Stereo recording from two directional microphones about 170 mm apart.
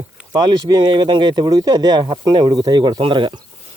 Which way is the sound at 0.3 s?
25° right (ahead or behind).